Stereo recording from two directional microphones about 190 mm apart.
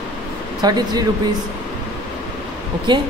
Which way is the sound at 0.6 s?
20° right (ahead or behind).